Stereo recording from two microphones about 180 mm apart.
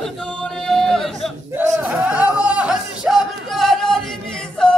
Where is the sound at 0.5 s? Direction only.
Centre (ahead or behind).